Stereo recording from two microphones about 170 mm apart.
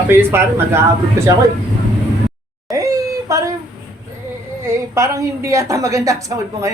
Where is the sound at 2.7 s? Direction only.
20° right (ahead or behind).